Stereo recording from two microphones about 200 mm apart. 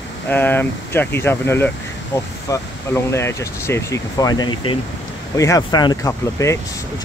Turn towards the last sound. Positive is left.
turn(degrees=15)  # may be behind; listen again after turning